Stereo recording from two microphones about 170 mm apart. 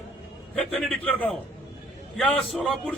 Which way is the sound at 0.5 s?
5° left (ahead or behind).